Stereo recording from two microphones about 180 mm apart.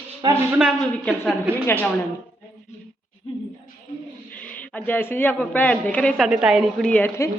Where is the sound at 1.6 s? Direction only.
10° left (ahead or behind).